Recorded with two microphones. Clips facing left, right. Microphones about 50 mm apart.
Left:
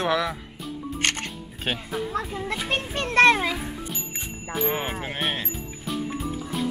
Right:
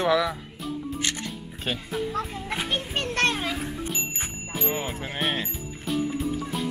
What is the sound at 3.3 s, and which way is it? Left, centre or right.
Music, left.